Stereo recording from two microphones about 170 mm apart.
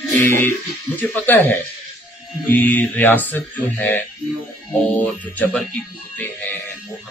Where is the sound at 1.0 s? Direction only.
10° left (ahead or behind).